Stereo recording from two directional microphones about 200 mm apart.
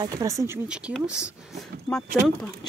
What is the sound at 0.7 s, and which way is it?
Speech, 5° right (ahead or behind).